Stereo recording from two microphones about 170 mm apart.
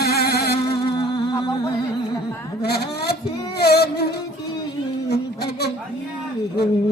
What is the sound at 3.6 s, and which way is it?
Music, 70° left (ahead or behind).